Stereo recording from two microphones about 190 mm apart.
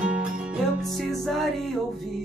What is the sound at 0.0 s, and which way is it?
Music, 5° right (ahead or behind).